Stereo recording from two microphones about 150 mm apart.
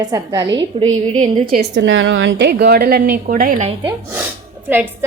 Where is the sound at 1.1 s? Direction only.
50° right (ahead or behind).